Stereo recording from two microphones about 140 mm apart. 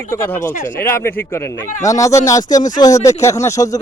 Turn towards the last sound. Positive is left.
turn(degrees=20)  # may be behind; listen again after turning